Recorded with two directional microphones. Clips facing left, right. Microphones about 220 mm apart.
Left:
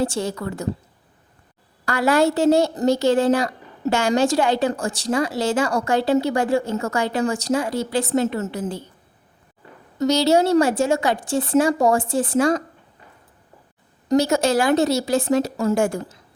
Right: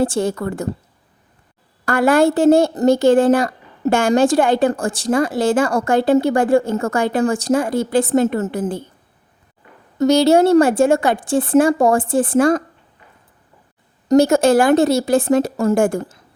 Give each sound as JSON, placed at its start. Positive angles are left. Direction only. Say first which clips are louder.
{"t": 0.0, "sound": "a woman's voice", "louder": "right 5 dB", "side_deg": -50}
{"t": 1.8, "sound": "a woman's voice", "louder": "right 4 dB", "side_deg": -50}
{"t": 10.0, "sound": "a woman's voice", "louder": "right 5 dB", "side_deg": -55}
{"t": 14.1, "sound": "a woman's voice", "louder": "right 6 dB", "side_deg": -50}